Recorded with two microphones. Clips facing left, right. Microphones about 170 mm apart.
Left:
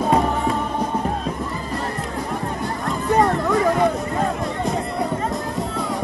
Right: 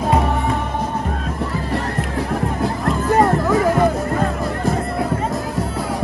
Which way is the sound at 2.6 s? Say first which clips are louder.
Right 5 dB; centre (ahead or behind).